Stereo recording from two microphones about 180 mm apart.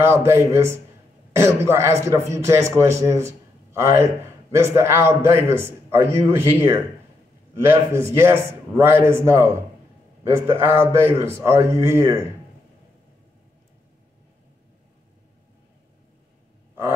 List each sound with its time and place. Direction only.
0.0 s a man's voice: 15° right (ahead or behind)
7.9 s a man's voice: 15° right (ahead or behind)